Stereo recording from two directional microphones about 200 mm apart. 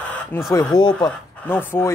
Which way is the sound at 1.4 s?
10° left (ahead or behind).